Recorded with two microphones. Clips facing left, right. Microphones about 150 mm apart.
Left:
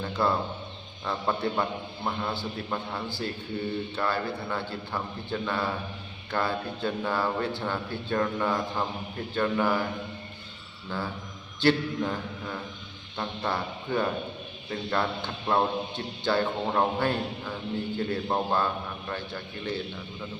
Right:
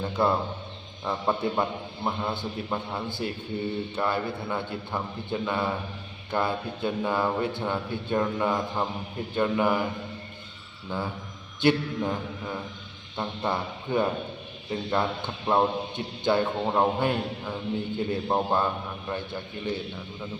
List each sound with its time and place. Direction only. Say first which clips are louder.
0.0 s a sound: right 2 dB; 20° right (ahead or behind)
1.0 s a man's voice: right 2 dB; 15° right (ahead or behind)
10.8 s a man's voice: right 2 dB; 20° right (ahead or behind)